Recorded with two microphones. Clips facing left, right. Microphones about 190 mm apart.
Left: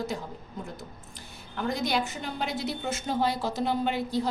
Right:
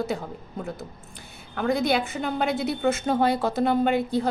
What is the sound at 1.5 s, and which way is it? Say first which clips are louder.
A woman's voice: right 6 dB; 60° right (ahead or behind).